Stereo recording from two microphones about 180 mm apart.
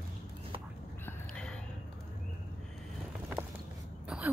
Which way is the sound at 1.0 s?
5° left (ahead or behind).